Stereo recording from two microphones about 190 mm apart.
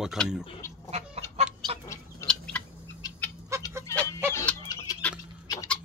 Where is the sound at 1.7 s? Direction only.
30° right (ahead or behind).